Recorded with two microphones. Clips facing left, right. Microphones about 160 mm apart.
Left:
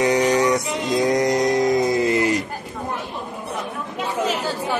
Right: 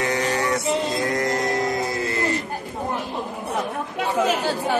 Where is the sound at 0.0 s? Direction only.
15° left (ahead or behind).